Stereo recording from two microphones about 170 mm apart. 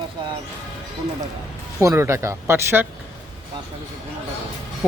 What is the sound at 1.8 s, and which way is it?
Speech, 15° right (ahead or behind).